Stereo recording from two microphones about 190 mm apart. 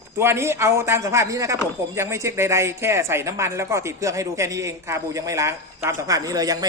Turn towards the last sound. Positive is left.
turn(degrees=-20)  # may be behind; listen again after turning